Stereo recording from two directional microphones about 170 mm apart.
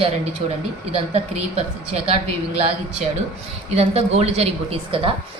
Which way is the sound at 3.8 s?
40° right (ahead or behind).